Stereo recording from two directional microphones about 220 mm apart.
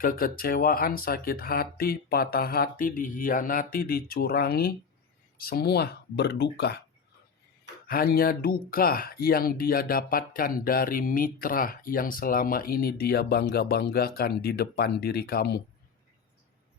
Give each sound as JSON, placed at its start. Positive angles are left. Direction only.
{"t": 0.0, "sound": "speech", "side_deg": 40}
{"t": 7.9, "sound": "speech", "side_deg": 40}